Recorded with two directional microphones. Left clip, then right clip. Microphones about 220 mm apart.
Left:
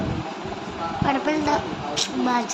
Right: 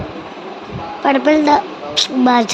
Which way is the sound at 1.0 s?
30° right (ahead or behind).